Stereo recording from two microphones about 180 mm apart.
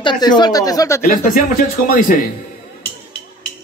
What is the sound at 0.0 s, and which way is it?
Speech, 25° left (ahead or behind).